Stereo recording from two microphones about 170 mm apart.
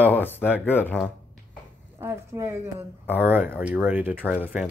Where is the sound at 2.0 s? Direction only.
15° right (ahead or behind).